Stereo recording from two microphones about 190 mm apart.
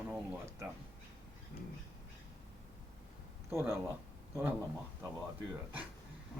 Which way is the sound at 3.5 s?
15° right (ahead or behind).